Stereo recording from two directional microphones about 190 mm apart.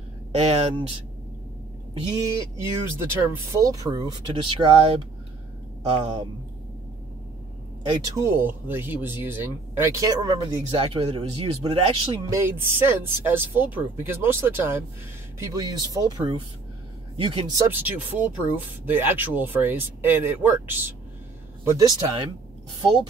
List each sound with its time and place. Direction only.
0.3 s speech: 35° right (ahead or behind)
2.0 s speech: 20° right (ahead or behind)
8.0 s speech: 15° right (ahead or behind); by 12.1 s 30° right (ahead or behind)
12.3 s speech: 15° right (ahead or behind)